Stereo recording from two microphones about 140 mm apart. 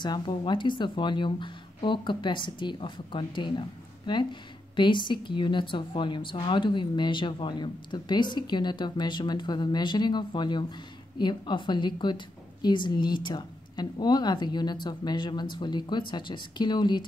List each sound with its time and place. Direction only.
0.0 s speech: 30° left (ahead or behind)